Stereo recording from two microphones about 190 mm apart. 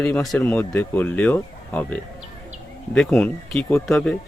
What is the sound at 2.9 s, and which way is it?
Speech, 5° left (ahead or behind).